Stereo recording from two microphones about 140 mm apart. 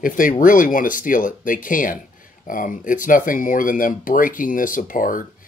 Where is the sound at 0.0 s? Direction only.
75° left (ahead or behind).